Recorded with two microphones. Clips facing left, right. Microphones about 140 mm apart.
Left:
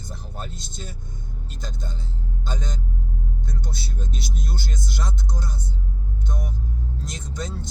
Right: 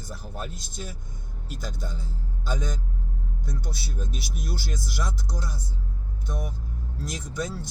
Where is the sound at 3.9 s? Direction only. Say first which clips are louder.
Left 2 dB; 5° right (ahead or behind).